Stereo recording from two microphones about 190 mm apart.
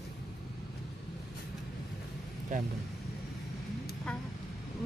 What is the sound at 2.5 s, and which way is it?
Speech, 40° right (ahead or behind).